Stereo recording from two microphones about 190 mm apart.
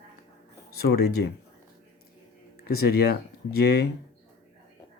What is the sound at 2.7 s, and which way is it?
Speech, 55° left (ahead or behind).